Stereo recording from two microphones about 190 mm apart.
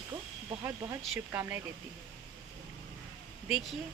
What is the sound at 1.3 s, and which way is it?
Speech, 10° right (ahead or behind).